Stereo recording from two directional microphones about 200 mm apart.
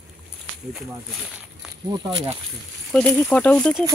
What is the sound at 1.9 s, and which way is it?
Speech, 25° right (ahead or behind).